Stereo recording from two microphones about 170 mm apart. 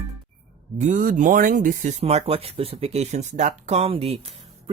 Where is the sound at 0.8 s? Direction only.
45° right (ahead or behind).